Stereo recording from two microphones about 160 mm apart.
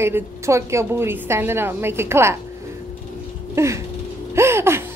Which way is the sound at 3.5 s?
20° right (ahead or behind).